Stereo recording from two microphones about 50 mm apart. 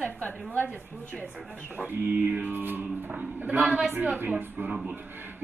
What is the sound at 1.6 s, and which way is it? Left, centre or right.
A man's voice, right.